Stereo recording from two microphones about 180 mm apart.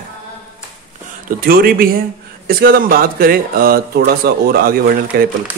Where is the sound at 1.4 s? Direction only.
55° right (ahead or behind).